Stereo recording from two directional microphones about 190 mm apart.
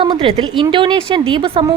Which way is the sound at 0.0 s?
25° right (ahead or behind).